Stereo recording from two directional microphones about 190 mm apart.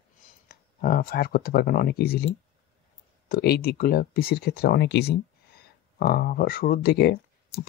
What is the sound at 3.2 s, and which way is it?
Speech, 50° left (ahead or behind).